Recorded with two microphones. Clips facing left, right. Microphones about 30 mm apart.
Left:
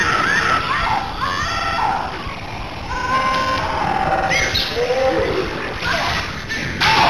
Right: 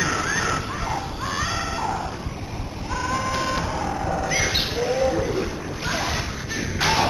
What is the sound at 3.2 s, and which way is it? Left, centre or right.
Printer, left.